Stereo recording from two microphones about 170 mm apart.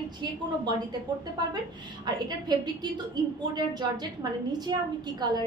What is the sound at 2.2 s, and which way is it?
A woman's voice, 25° right (ahead or behind).